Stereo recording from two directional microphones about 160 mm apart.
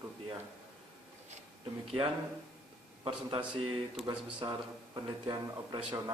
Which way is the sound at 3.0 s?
30° right (ahead or behind).